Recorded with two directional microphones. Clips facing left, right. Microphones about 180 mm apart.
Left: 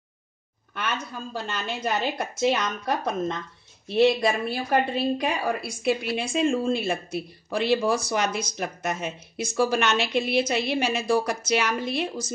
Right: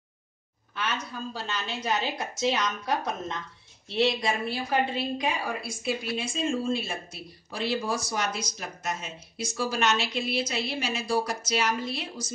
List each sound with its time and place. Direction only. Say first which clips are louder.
0.7 s a woman's voice: left 2 dB; 55° left (ahead or behind)